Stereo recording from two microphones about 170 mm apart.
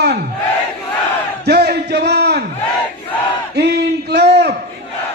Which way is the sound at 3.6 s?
80° right.